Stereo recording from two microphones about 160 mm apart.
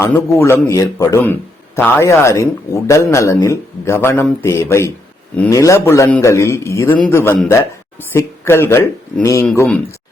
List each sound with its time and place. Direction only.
0.0 s speech: 15° left (ahead or behind)